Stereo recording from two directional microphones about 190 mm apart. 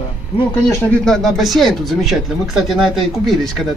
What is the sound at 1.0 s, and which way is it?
Speech, centre (ahead or behind).